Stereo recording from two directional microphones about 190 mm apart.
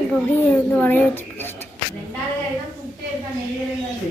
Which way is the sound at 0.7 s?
5° left (ahead or behind).